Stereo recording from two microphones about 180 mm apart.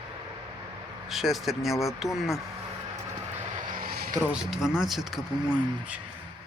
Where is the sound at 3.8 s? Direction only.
55° right (ahead or behind).